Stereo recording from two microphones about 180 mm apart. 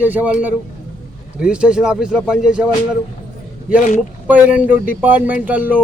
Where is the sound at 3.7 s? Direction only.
45° left (ahead or behind).